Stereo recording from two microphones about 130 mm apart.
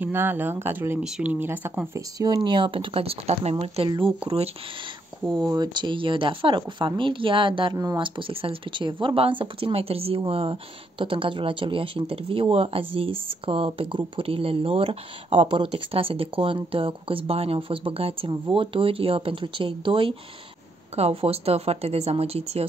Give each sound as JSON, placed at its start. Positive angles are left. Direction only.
{"t": 0.0, "sound": "speech", "side_deg": -15}
{"t": 2.0, "sound": "speech", "side_deg": -30}
{"t": 5.4, "sound": "speech", "side_deg": -30}
{"t": 7.7, "sound": "speech", "side_deg": -25}
{"t": 8.0, "sound": "speech", "side_deg": -45}